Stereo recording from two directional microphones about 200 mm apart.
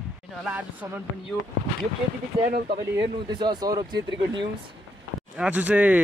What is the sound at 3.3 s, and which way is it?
Speech, 20° right (ahead or behind).